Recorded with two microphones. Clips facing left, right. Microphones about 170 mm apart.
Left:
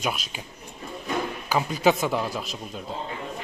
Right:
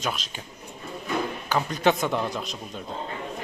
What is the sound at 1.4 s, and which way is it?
A man's voice, 5° left (ahead or behind).